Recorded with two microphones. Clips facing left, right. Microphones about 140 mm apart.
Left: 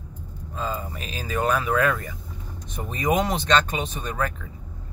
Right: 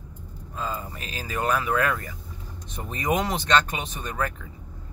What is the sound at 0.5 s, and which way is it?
Speech, 20° left (ahead or behind).